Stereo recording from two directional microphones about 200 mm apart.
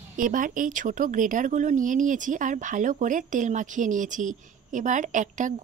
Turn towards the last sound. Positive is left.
turn(degrees=-40)  # may be behind; listen again after turning